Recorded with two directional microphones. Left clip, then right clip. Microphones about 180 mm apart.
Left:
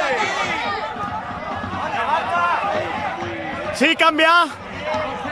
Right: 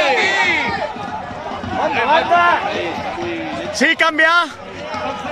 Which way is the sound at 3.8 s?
5° left (ahead or behind).